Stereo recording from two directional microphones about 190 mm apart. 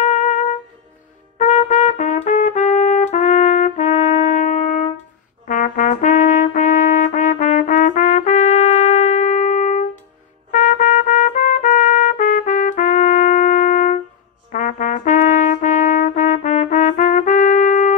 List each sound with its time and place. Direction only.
0.0 s trumpet: 40° left (ahead or behind)
1.4 s trumpet: 40° left (ahead or behind)
5.5 s brass instrument: 45° left (ahead or behind)
10.5 s trumpet: 40° left (ahead or behind)
14.5 s brass instrument: 40° left (ahead or behind)